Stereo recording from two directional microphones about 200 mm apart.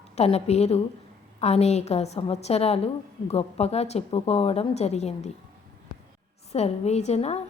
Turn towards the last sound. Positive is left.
turn(degrees=30)  # may be behind; listen again after turning